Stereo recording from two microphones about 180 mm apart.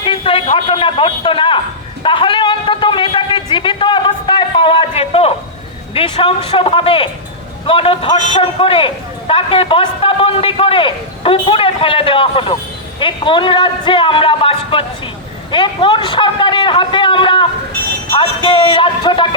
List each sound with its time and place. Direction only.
0.0 s a man's voice: 30° left (ahead or behind)